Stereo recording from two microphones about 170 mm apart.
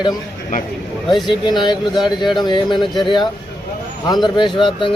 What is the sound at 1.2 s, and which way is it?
Speech, 25° left (ahead or behind).